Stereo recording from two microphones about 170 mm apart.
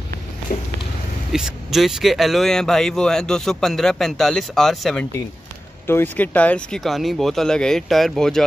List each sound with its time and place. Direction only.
0.5 s a sound: 60° left (ahead or behind)
1.3 s speech: centre (ahead or behind)
5.9 s speech: 10° left (ahead or behind)